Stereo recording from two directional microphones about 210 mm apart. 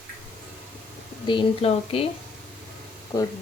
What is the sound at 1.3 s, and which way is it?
Speech, 25° left (ahead or behind).